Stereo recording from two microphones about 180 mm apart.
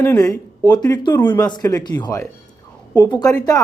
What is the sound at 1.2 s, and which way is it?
Speech, 10° left (ahead or behind).